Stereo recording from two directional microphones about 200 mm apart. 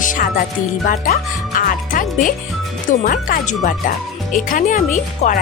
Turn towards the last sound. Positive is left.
turn(degrees=40)  # may be behind; listen again after turning